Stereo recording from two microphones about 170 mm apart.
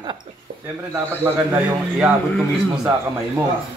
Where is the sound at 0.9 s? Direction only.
15° right (ahead or behind).